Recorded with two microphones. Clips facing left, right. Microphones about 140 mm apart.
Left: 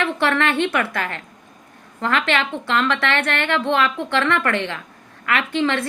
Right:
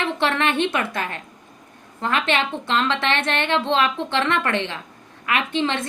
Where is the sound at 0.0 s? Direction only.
20° right (ahead or behind).